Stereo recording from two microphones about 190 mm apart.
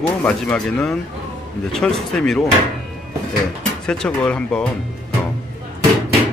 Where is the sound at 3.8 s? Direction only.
5° left (ahead or behind).